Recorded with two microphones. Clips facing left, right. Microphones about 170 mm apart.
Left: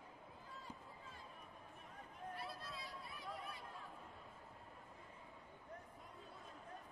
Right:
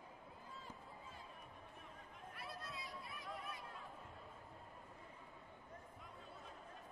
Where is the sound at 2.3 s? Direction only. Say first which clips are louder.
Even; 30° left (ahead or behind).